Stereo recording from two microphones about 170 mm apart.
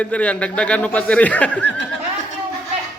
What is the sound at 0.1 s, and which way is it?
A man's voice, 5° left (ahead or behind).